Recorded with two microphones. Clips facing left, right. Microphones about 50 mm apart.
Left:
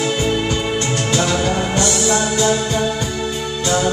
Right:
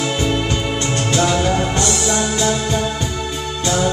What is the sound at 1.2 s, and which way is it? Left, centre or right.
Music, centre.